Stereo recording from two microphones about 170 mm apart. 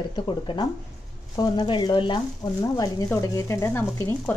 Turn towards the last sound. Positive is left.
turn(degrees=15)  # may be behind; listen again after turning